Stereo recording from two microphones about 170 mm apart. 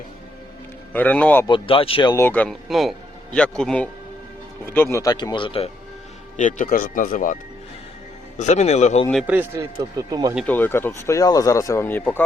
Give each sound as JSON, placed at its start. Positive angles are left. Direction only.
{"t": 0.9, "sound": "speech", "side_deg": 10}
{"t": 1.5, "sound": "speech", "side_deg": 30}
{"t": 2.1, "sound": "speech", "side_deg": 10}
{"t": 6.3, "sound": "speech", "side_deg": 50}
{"t": 8.4, "sound": "speech", "side_deg": 40}
{"t": 9.2, "sound": "speech", "side_deg": -10}
{"t": 10.4, "sound": "speech", "side_deg": 10}